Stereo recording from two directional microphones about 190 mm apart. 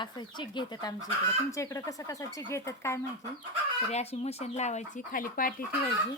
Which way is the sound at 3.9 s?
35° left (ahead or behind).